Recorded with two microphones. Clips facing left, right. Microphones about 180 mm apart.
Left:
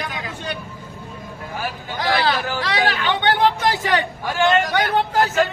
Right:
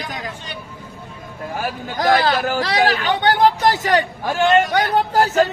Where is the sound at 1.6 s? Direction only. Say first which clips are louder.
Right 4 dB; 45° right (ahead or behind).